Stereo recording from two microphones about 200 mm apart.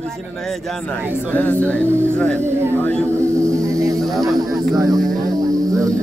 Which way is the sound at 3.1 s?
15° right (ahead or behind).